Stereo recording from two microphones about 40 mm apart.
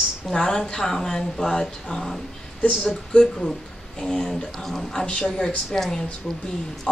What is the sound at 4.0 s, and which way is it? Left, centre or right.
A woman's voice, centre.